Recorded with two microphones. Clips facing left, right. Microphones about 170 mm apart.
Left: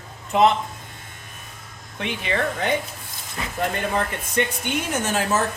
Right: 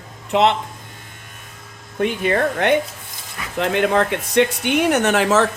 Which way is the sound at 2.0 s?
50° right (ahead or behind).